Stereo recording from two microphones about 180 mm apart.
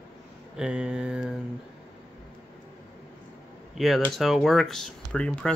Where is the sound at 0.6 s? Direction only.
5° right (ahead or behind).